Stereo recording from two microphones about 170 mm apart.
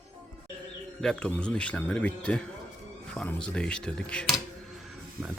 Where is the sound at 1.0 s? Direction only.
5° left (ahead or behind).